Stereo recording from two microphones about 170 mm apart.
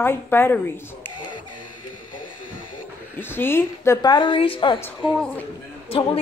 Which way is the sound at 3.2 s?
10° left (ahead or behind).